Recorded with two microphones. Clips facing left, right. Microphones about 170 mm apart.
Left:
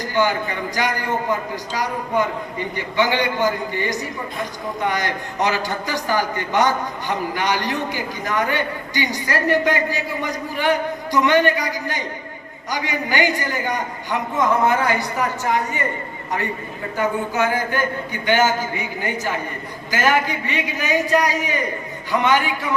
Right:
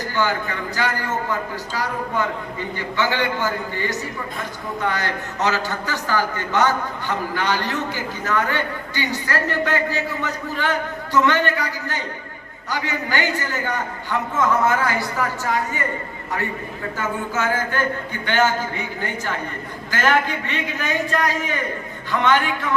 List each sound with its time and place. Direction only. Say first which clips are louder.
0.1 s a man's voice: left 3 dB; 15° left (ahead or behind)
17.0 s a man's voice: left 4 dB; 15° left (ahead or behind)